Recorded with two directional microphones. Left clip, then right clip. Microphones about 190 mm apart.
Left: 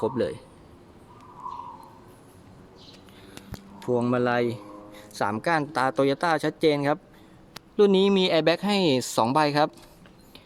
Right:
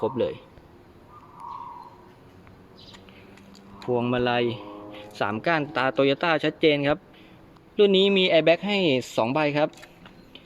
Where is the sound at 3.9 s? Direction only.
10° left (ahead or behind).